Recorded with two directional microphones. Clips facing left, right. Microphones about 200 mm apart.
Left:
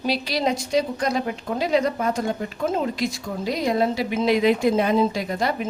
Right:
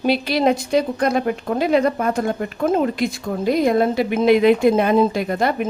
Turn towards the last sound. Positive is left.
turn(degrees=-55)  # may be behind; listen again after turning